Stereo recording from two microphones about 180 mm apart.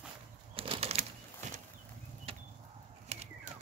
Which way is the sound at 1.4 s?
40° right (ahead or behind).